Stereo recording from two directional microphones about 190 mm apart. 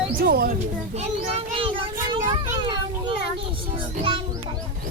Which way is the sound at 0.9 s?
30° right (ahead or behind).